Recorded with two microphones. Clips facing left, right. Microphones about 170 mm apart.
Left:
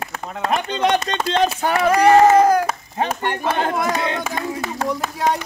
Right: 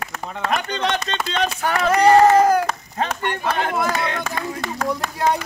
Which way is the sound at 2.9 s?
15° left (ahead or behind).